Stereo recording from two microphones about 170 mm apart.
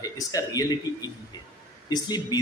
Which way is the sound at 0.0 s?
20° left (ahead or behind).